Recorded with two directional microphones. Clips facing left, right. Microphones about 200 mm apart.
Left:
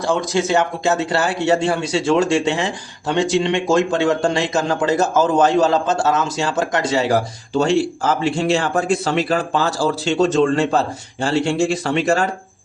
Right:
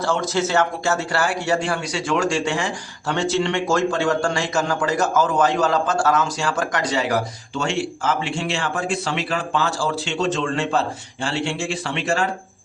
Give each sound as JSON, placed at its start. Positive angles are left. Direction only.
{"t": 0.0, "sound": "speech", "side_deg": 15}